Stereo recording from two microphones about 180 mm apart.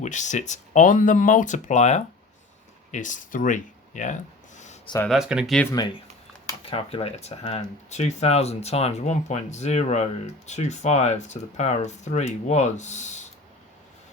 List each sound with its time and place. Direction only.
0.0 s speech: 40° left (ahead or behind)
5.0 s speech: centre (ahead or behind)
5.7 s speech: 25° left (ahead or behind); by 13.2 s 40° left (ahead or behind)